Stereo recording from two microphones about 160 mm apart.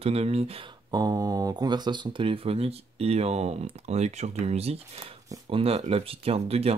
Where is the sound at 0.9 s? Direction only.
25° right (ahead or behind).